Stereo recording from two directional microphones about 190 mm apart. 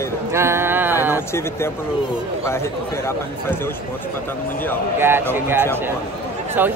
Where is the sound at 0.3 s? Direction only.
15° right (ahead or behind).